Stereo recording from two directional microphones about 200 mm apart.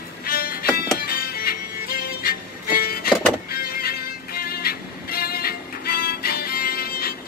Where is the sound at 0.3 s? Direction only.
50° left (ahead or behind).